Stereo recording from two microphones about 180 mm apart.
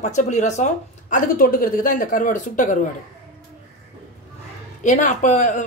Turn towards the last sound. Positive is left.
turn(degrees=40)  # may be behind; listen again after turning